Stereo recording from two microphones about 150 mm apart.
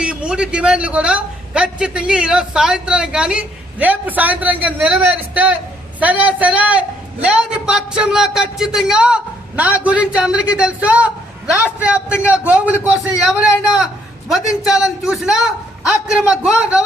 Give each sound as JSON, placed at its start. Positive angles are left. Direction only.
{"t": 0.0, "sound": "a woman's voice", "side_deg": -5}
{"t": 13.7, "sound": "a man's voice", "side_deg": 0}